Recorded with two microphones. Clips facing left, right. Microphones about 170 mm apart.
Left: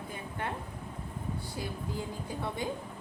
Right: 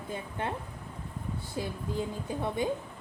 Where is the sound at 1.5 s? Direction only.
20° right (ahead or behind).